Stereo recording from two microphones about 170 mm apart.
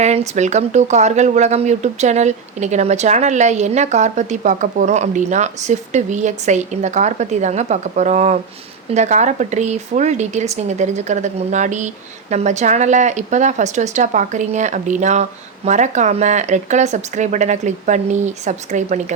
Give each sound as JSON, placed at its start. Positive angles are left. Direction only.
{"t": 0.0, "sound": "speech", "side_deg": -40}